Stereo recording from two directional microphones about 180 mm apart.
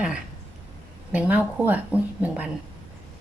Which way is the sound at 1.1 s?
10° right (ahead or behind).